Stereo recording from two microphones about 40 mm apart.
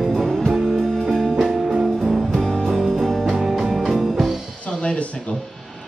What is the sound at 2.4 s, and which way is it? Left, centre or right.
Music, centre.